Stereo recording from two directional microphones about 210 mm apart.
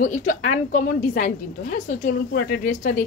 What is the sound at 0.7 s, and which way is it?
A woman's voice, 40° left (ahead or behind).